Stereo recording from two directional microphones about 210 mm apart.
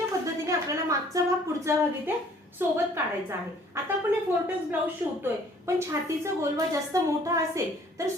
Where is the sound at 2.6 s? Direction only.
10° right (ahead or behind).